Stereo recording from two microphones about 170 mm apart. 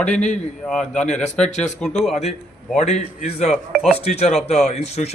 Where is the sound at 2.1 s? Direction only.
35° left (ahead or behind).